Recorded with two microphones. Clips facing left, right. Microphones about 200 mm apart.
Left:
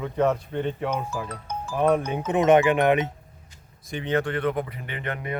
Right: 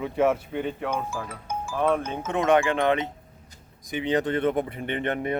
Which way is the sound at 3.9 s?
15° right (ahead or behind).